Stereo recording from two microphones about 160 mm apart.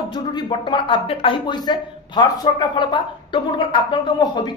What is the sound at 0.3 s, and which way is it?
Speech, 30° left (ahead or behind).